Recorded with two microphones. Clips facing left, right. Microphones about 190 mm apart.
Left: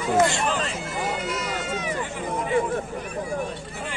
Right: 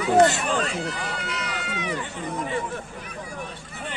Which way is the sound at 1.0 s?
45° left (ahead or behind).